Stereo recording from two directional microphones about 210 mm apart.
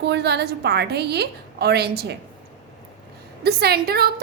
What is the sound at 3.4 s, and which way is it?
Speech, 50° right (ahead or behind).